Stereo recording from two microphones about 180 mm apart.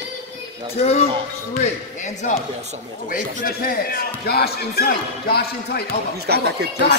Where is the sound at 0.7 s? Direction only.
35° left (ahead or behind); by 5.8 s 60° left (ahead or behind).